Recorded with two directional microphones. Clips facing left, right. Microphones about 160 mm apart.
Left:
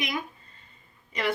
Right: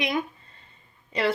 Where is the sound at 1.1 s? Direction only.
30° right (ahead or behind).